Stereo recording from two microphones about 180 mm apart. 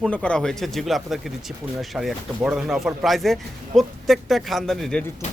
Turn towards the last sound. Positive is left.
turn(degrees=0)  # may be behind; listen again after turning